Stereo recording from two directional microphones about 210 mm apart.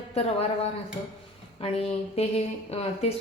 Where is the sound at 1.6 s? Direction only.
30° left (ahead or behind).